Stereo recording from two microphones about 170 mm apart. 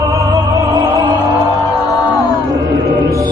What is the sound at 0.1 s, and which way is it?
Music, 15° right (ahead or behind).